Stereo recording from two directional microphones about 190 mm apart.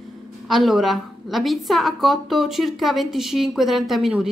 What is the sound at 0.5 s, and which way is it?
A woman's voice, centre (ahead or behind).